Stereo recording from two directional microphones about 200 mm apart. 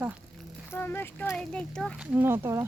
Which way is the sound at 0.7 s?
10° left (ahead or behind).